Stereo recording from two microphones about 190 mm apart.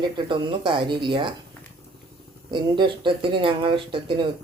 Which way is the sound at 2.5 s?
25° right (ahead or behind).